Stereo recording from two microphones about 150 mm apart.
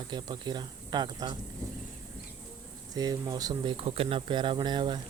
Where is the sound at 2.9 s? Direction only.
25° right (ahead or behind).